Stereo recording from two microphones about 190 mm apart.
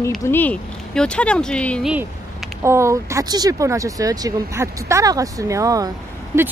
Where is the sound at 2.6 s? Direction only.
15° right (ahead or behind).